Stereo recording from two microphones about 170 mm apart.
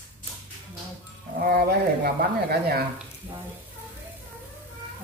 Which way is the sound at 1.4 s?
60° right (ahead or behind).